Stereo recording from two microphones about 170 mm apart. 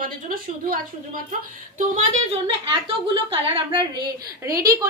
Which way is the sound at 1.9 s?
35° right (ahead or behind).